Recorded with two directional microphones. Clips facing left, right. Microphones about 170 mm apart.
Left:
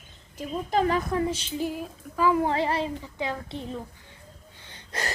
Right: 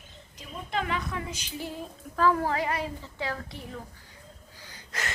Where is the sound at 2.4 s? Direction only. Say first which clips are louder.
Left 4 dB; 25° left (ahead or behind).